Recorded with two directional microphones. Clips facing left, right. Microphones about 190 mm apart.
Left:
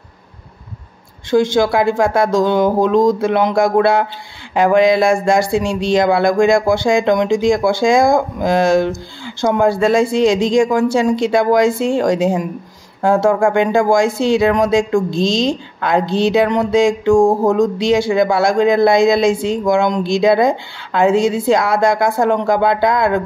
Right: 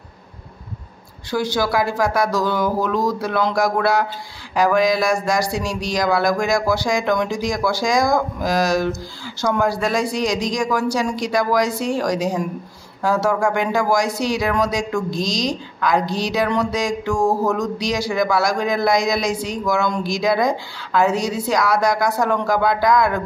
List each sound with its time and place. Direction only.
1.3 s speech: 25° left (ahead or behind)